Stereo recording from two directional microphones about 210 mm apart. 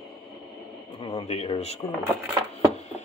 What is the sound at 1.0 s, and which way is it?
Speech, 30° left (ahead or behind).